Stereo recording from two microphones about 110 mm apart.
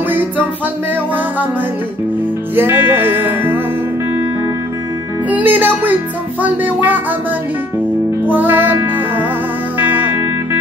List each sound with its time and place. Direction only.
0.1 s music: 15° right (ahead or behind)
2.5 s music: 20° right (ahead or behind)
5.3 s speech: 15° right (ahead or behind)
8.3 s music: 15° right (ahead or behind)
9.8 s music: 15° right (ahead or behind)